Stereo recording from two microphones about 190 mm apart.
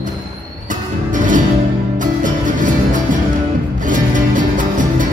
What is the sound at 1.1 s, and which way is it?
Music, 45° right (ahead or behind).